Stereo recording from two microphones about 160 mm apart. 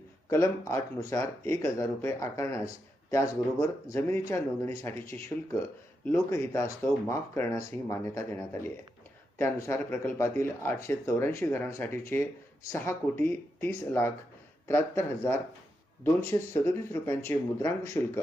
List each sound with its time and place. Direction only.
0.3 s speech: 20° left (ahead or behind)
16.5 s speech: 15° left (ahead or behind)